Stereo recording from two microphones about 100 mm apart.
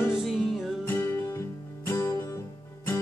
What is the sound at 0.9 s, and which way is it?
Music, 25° left (ahead or behind).